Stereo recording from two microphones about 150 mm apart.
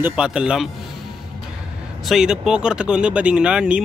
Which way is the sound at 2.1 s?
5° right (ahead or behind).